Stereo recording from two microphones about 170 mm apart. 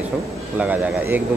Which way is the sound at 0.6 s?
10° right (ahead or behind).